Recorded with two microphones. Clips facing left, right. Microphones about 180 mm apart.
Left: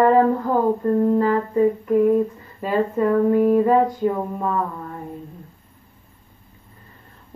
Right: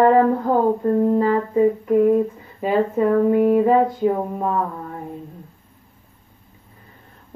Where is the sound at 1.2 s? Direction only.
5° right (ahead or behind).